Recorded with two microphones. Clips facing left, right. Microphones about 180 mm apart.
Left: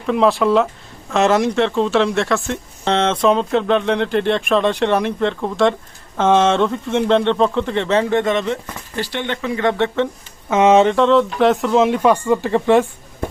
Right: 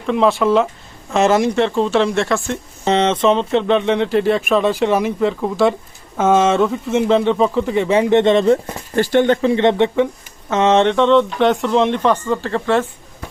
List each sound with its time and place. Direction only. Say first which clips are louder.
0.0 s speech: even; centre (ahead or behind)
8.2 s speech: right 5 dB; 30° right (ahead or behind)
9.0 s speech: right 10 dB; 45° right (ahead or behind)
9.5 s speech: right 4 dB; 25° right (ahead or behind)
10.5 s speech: left 2 dB; 10° left (ahead or behind)